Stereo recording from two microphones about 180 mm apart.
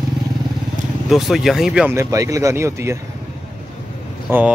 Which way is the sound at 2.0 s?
15° right (ahead or behind).